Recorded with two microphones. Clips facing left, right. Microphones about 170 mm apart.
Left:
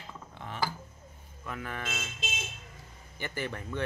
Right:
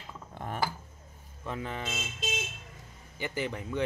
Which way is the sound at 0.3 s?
45° right (ahead or behind).